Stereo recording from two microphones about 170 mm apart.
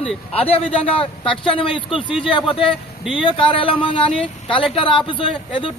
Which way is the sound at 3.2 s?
30° left (ahead or behind).